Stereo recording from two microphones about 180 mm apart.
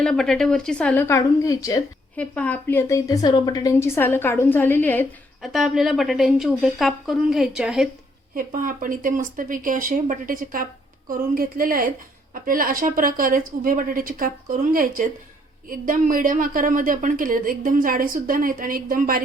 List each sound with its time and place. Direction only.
0.0 s a woman's voice: centre (ahead or behind)
5.4 s speech: centre (ahead or behind)
8.4 s a woman's voice: 50° right (ahead or behind)